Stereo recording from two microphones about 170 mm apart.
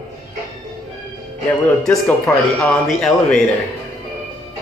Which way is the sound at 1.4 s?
5° left (ahead or behind).